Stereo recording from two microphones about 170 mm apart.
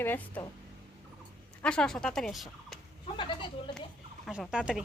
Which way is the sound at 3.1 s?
30° left (ahead or behind).